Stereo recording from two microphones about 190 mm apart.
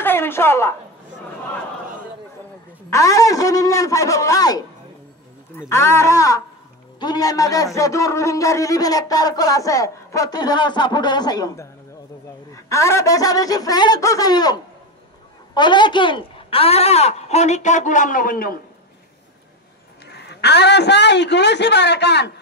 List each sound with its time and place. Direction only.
0.0 s a sound: 10° left (ahead or behind)
2.9 s a man's voice: 15° left (ahead or behind); by 18.6 s 50° left (ahead or behind)
20.1 s a man's voice: 60° left (ahead or behind)